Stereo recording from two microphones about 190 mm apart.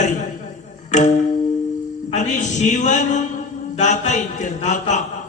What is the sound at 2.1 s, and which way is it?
A man's voice, 40° left (ahead or behind).